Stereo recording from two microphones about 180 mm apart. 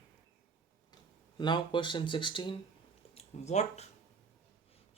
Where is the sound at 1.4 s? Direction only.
25° left (ahead or behind).